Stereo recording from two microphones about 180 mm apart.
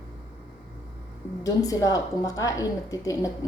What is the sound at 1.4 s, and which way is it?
A woman's voice, 20° left (ahead or behind).